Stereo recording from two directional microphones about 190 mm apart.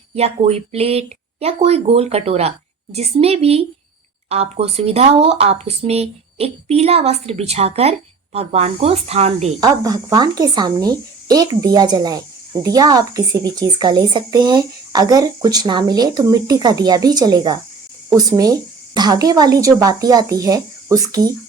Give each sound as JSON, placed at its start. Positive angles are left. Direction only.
{"t": 0.2, "sound": "speech", "side_deg": -35}
{"t": 9.6, "sound": "speech", "side_deg": -20}